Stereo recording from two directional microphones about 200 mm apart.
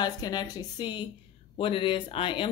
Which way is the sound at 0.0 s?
20° left (ahead or behind).